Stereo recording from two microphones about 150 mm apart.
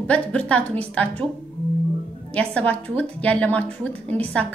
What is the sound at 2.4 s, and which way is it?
A woman's voice, 10° left (ahead or behind).